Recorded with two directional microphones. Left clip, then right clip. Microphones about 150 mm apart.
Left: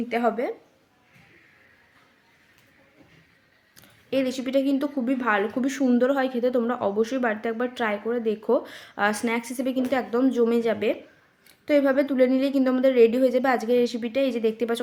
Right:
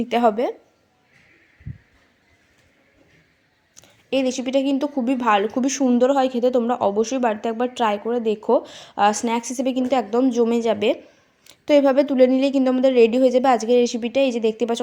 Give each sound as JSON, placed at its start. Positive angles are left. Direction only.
{"t": 0.1, "sound": "speech", "side_deg": -30}
{"t": 3.8, "sound": "a woman's voice", "side_deg": -20}